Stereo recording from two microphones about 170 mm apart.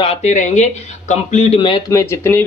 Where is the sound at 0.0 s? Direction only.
40° left (ahead or behind).